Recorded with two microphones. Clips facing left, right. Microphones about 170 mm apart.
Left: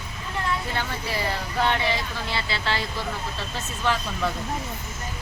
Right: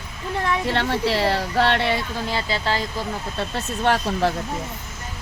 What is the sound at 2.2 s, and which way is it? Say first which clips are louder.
Speech: right 4 dB; 40° right (ahead or behind).